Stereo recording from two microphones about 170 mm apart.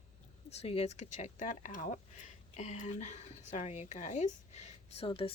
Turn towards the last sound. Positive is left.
turn(degrees=35)  # may be behind; listen again after turning